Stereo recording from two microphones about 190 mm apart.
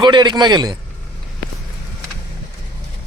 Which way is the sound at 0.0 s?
25° right (ahead or behind).